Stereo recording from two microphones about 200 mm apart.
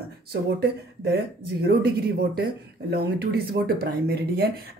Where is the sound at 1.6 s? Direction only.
50° right (ahead or behind).